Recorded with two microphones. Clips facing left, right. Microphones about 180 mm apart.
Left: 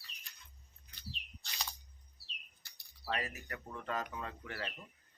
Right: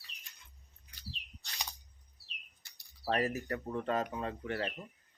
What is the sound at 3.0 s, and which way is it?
Speech, 40° right (ahead or behind).